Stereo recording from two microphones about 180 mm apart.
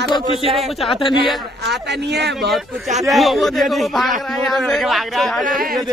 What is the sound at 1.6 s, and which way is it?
Speech, 70° right (ahead or behind).